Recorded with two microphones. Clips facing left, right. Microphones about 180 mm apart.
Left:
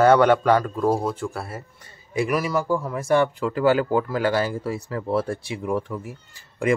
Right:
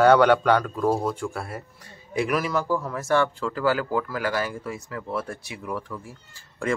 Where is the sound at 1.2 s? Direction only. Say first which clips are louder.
Left 1 dB; centre (ahead or behind); by 6.1 s 20° left (ahead or behind).